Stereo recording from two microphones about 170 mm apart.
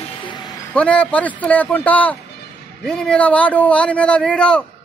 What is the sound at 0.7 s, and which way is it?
A man's voice, 10° left (ahead or behind).